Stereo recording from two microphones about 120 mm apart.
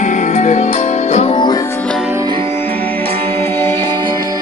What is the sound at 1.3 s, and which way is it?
Music, 35° left (ahead or behind).